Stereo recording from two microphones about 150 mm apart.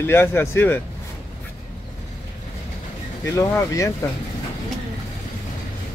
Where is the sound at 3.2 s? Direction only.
15° left (ahead or behind).